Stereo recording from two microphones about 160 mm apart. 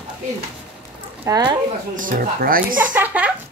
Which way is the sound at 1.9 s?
60° right (ahead or behind).